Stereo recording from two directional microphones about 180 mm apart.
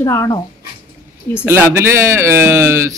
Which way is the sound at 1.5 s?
15° right (ahead or behind).